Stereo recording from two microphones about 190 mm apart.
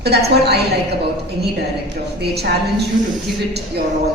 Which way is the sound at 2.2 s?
60° right (ahead or behind).